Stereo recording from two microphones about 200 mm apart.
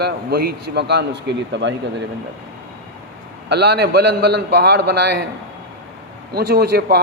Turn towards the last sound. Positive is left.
turn(degrees=-55)  # may be behind; listen again after turning